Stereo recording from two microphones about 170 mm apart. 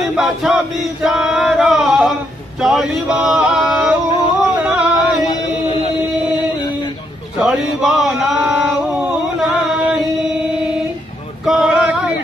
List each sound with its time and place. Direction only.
0.0 s chant: centre (ahead or behind)
1.0 s male singing: 5° right (ahead or behind)
4.6 s a sound: 5° right (ahead or behind)
7.3 s a sound: centre (ahead or behind)
9.4 s singing: 5° right (ahead or behind)
11.4 s male singing: 5° right (ahead or behind)